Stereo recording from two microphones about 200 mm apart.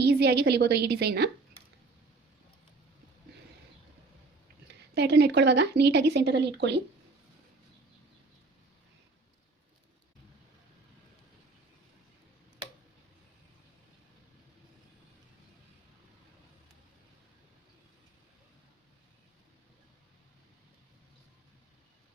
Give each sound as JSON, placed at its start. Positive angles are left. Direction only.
{"t": 0.0, "sound": "speech", "side_deg": -55}
{"t": 4.7, "sound": "speech", "side_deg": -55}